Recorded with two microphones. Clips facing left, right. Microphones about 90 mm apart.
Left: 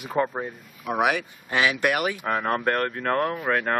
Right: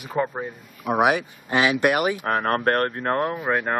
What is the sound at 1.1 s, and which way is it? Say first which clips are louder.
Speech: right 3 dB; 25° right (ahead or behind).